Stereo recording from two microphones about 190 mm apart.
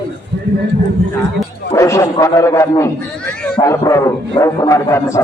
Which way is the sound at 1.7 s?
15° left (ahead or behind).